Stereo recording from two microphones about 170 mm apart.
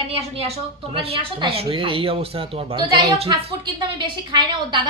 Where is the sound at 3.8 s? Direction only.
30° right (ahead or behind).